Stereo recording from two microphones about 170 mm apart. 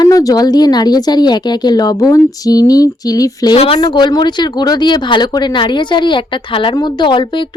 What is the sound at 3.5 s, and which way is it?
Speech, 35° left (ahead or behind).